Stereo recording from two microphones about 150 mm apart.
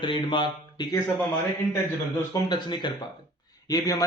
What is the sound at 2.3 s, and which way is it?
Speech, 30° left (ahead or behind).